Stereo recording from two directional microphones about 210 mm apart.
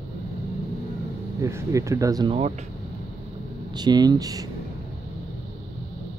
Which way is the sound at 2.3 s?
30° right (ahead or behind).